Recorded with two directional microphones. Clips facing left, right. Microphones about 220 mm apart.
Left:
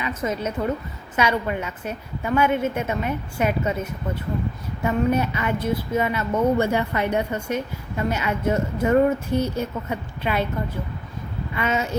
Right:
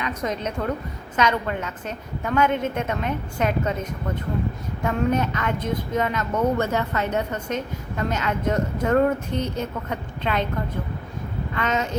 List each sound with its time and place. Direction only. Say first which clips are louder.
0.0 s a woman's voice: left 1 dB; 5° left (ahead or behind)
11.5 s a woman's voice: left 1 dB; 10° left (ahead or behind)